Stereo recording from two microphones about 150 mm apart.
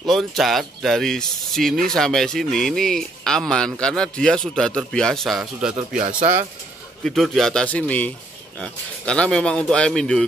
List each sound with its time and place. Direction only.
0.0 s a man's voice: centre (ahead or behind)
5.9 s speech: 60° right (ahead or behind)
7.0 s a man's voice: centre (ahead or behind)